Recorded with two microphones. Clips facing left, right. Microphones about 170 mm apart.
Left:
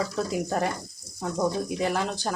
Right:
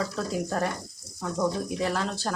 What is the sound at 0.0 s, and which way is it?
Speech, 20° left (ahead or behind).